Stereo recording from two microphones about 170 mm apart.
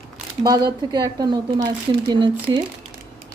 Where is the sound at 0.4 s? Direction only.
20° right (ahead or behind).